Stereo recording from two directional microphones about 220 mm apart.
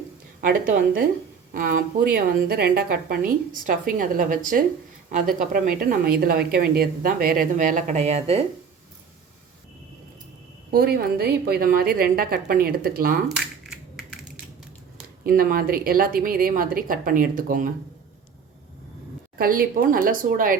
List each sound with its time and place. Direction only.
0.4 s a woman's voice: 40° right (ahead or behind)
10.7 s a woman's voice: 45° right (ahead or behind)
13.2 s crushing: 5° right (ahead or behind)
15.2 s a woman's voice: 40° right (ahead or behind)
19.4 s a woman's voice: 40° right (ahead or behind)